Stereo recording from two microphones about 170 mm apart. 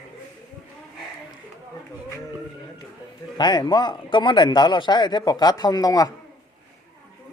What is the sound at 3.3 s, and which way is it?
Speech, 25° left (ahead or behind).